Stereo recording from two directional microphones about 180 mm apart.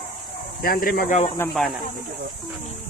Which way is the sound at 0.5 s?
55° left (ahead or behind).